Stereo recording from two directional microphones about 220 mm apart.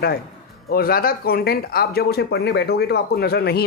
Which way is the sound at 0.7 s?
45° left (ahead or behind).